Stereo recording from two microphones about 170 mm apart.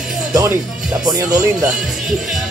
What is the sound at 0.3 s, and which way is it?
Speech, 20° right (ahead or behind).